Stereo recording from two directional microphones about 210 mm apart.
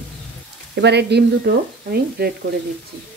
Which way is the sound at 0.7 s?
55° right (ahead or behind).